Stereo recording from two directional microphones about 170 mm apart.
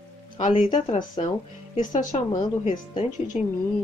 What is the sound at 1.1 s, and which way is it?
Speech, 30° left (ahead or behind).